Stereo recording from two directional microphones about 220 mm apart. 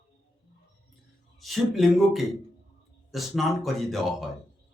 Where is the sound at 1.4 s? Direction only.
Centre (ahead or behind).